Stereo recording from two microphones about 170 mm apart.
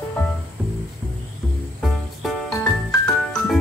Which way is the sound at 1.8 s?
Centre (ahead or behind).